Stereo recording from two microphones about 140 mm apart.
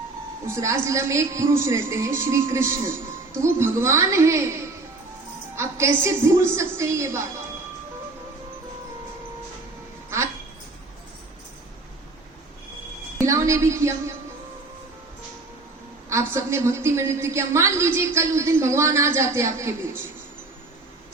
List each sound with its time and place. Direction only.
0.4 s a woman's voice: 20° right (ahead or behind)
13.1 s a sound: 20° right (ahead or behind)
16.0 s a woman's voice: 20° right (ahead or behind)